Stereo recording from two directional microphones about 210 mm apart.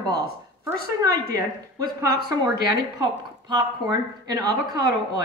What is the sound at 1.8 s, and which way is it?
Speech, 45° right (ahead or behind).